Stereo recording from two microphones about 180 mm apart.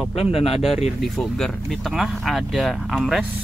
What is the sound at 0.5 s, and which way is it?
Speech, centre (ahead or behind).